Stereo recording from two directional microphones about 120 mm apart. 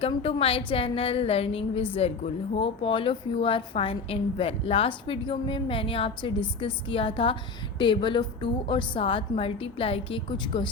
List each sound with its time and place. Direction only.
0.2 s a woman's voice: 50° left (ahead or behind)